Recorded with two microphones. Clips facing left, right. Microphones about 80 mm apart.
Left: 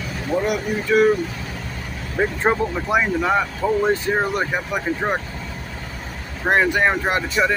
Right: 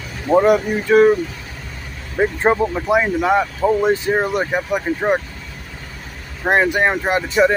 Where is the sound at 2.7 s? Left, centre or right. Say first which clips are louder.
Right 3 dB; centre.